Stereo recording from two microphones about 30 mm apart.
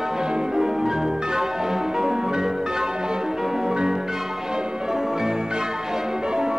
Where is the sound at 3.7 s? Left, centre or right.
Right.